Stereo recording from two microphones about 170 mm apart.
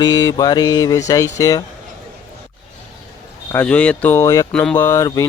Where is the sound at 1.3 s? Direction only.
20° left (ahead or behind).